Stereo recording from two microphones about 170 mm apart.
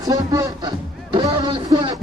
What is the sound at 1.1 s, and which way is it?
Music, 25° right (ahead or behind).